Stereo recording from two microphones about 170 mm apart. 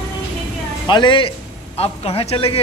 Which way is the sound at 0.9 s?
30° left (ahead or behind).